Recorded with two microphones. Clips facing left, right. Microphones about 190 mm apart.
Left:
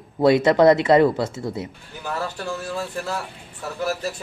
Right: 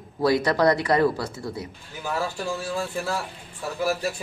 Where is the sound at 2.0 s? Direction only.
10° right (ahead or behind).